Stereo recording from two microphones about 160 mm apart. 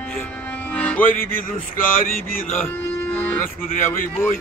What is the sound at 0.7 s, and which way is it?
Music, 10° left (ahead or behind).